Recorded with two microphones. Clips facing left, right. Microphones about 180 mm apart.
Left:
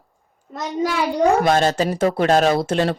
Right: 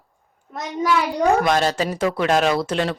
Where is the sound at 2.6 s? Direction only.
50° left (ahead or behind).